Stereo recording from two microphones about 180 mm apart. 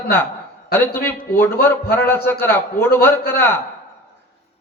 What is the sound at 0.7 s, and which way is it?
A man's voice, 10° left (ahead or behind).